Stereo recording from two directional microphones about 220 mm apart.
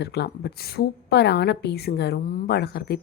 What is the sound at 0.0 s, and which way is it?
Speech, 50° left (ahead or behind).